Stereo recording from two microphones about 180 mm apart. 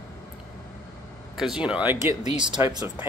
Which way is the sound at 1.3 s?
5° right (ahead or behind).